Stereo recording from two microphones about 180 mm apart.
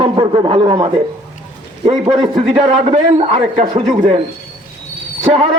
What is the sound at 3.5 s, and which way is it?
Speech, 45° right (ahead or behind).